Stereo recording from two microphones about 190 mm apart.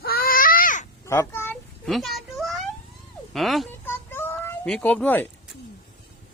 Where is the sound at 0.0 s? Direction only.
50° left (ahead or behind).